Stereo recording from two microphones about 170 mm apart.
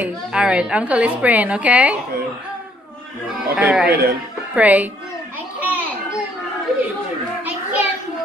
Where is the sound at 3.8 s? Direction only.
65° right (ahead or behind).